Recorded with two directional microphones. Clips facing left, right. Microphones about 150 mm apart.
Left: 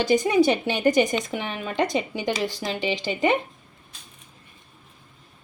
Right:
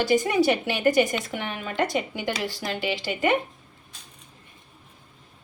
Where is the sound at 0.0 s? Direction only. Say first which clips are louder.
Left 2 dB; 20° left (ahead or behind).